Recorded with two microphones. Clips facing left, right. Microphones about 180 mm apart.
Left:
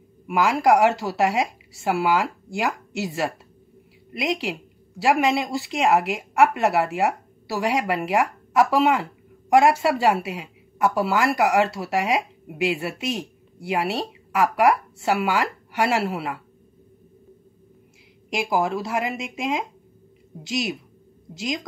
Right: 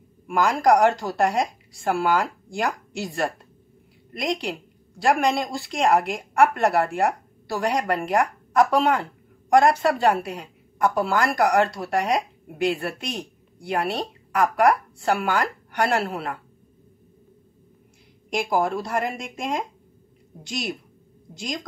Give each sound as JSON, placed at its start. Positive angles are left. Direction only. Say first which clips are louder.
{"t": 0.3, "sound": "a woman's voice", "louder": "even", "side_deg": 5}
{"t": 18.3, "sound": "speech", "louder": "even", "side_deg": 0}